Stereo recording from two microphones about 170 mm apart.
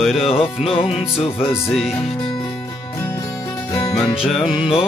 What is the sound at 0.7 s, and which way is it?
Music, 35° left (ahead or behind).